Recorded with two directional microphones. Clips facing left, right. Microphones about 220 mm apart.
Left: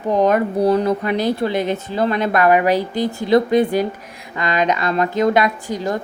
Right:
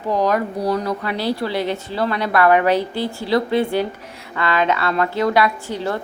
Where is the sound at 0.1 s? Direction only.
20° left (ahead or behind).